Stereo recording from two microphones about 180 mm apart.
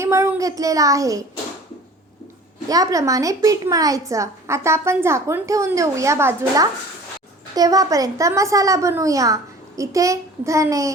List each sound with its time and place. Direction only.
0.0 s a child's voice: 15° right (ahead or behind)
2.6 s a woman's voice: 20° right (ahead or behind)